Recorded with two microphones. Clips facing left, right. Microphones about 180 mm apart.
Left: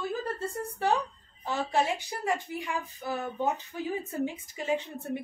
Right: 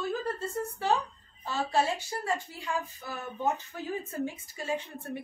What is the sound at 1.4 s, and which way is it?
Speech, 15° left (ahead or behind).